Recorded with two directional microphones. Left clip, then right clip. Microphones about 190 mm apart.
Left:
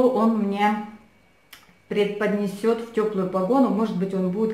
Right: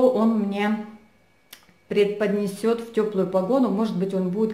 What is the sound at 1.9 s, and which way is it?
Speech, 30° right (ahead or behind).